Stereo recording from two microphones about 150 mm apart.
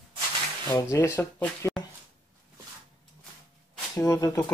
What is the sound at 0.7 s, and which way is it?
Speech, 20° left (ahead or behind).